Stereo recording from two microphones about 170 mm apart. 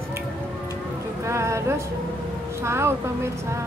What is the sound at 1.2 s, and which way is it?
Speech, 15° right (ahead or behind).